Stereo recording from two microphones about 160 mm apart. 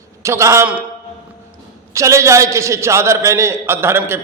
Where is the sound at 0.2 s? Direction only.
20° right (ahead or behind).